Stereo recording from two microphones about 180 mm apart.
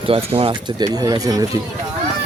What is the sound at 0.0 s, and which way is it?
Speech, 30° right (ahead or behind).